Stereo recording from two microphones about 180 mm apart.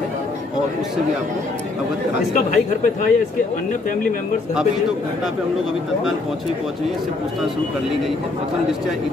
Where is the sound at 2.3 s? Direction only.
45° left (ahead or behind).